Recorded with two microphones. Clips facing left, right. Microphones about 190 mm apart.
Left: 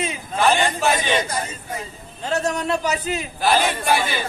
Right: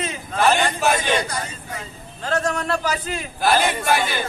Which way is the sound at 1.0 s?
20° left (ahead or behind).